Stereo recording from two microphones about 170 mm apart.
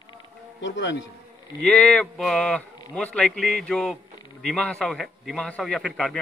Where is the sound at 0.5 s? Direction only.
90° left.